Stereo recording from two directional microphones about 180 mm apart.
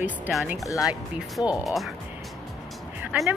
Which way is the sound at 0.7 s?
20° left (ahead or behind).